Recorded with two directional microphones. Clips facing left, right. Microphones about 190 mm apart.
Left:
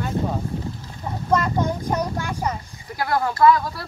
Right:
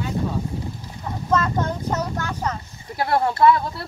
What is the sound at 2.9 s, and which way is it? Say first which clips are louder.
Speech: right 1 dB; 25° right (ahead or behind).